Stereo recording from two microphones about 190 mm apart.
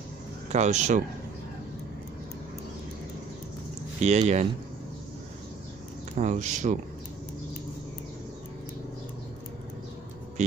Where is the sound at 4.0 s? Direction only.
35° right (ahead or behind).